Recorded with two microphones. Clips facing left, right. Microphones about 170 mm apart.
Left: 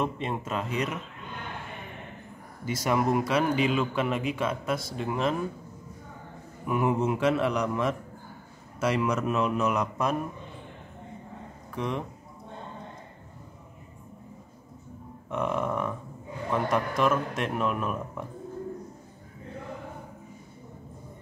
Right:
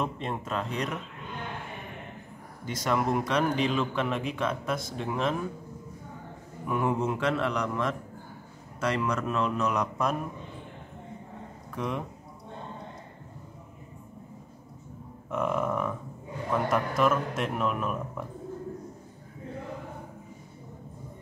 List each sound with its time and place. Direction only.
0.0 s a man's voice: 5° left (ahead or behind)
2.6 s a man's voice: 10° left (ahead or behind)
6.6 s speech: 5° left (ahead or behind)
11.7 s speech: centre (ahead or behind)
15.2 s burping: centre (ahead or behind)
16.5 s a man's voice: centre (ahead or behind)